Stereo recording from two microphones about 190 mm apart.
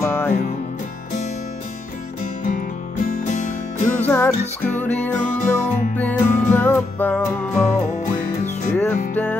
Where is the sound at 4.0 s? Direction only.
10° left (ahead or behind).